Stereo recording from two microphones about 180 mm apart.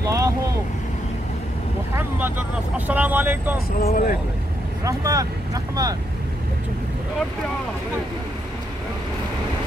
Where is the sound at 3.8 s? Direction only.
45° left (ahead or behind).